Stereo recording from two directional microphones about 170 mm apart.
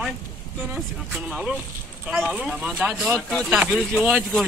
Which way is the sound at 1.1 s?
5° right (ahead or behind).